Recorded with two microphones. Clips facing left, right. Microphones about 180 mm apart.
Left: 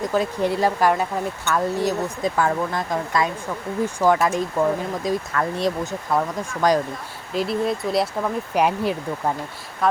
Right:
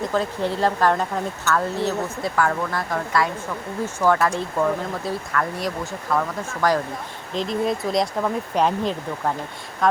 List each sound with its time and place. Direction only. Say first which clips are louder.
0.0 s speech: left 2 dB; 10° left (ahead or behind)
7.3 s speech: left 1 dB; 5° left (ahead or behind)